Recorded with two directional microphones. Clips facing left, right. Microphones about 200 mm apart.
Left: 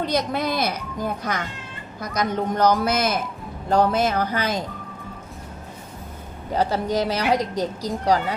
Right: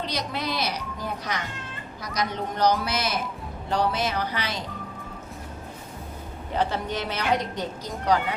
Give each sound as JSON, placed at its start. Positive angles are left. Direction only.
{"t": 0.0, "sound": "a woman's voice", "side_deg": 50}
{"t": 6.5, "sound": "a woman's voice", "side_deg": 40}